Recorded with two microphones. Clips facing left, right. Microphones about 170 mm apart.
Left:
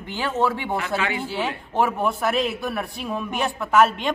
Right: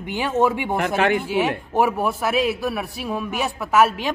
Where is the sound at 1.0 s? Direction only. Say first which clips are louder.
Right 7 dB; 55° right (ahead or behind).